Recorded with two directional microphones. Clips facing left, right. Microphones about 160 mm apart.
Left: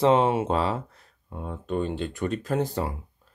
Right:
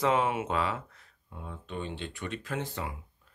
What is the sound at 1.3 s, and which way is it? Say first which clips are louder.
Speech: left 10 dB; 45° left (ahead or behind).